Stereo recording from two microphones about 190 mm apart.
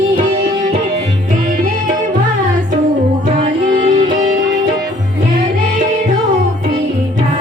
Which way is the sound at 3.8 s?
30° right (ahead or behind).